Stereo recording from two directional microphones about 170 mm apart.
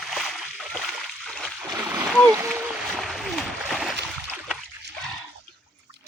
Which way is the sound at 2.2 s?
15° right (ahead or behind).